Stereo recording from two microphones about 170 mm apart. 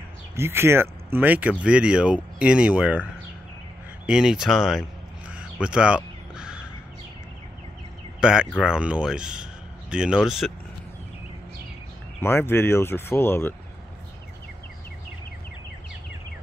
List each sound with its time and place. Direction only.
0.4 s speech: 15° right (ahead or behind)
5.3 s a sound: 5° right (ahead or behind)
6.3 s crow: 5° right (ahead or behind)
8.2 s speech: 5° right (ahead or behind)
12.2 s speech: 15° left (ahead or behind)